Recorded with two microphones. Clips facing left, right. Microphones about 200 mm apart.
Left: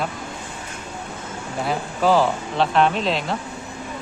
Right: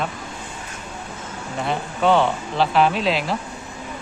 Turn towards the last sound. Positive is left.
turn(degrees=0)  # may be behind; listen again after turning